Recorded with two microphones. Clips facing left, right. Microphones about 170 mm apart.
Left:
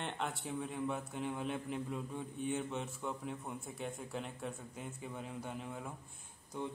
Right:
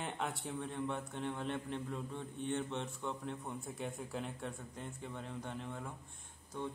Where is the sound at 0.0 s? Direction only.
Centre (ahead or behind).